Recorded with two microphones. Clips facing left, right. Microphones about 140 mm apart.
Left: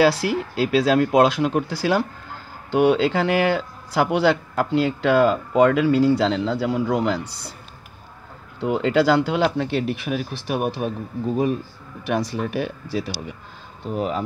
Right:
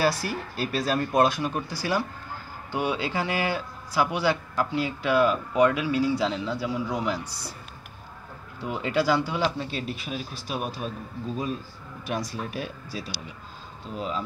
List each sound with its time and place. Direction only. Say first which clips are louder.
0.0 s speech: left 7 dB; 80° left; by 7.2 s 60° left (ahead or behind)
8.5 s speech: left 7 dB; 75° left (ahead or behind)
12.1 s speech: left 8 dB; 70° left (ahead or behind)
13.8 s speech: left 7 dB; 60° left (ahead or behind)